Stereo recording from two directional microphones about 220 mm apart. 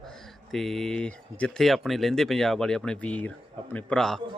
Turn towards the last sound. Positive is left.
turn(degrees=0)  # may be behind; listen again after turning